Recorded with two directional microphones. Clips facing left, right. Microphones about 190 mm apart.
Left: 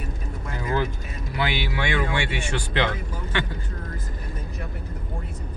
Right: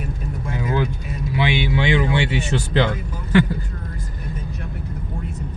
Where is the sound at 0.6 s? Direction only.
20° right (ahead or behind).